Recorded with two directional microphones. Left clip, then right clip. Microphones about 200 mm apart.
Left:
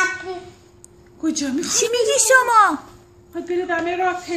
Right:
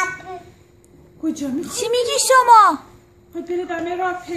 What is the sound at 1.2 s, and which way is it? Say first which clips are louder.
Speech: left 2 dB; 15° right (ahead or behind).